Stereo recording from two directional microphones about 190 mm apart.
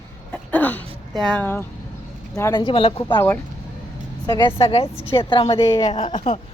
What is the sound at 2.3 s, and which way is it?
Speech, 20° left (ahead or behind).